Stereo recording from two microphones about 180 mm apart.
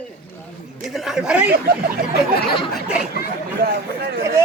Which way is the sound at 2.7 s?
5° right (ahead or behind).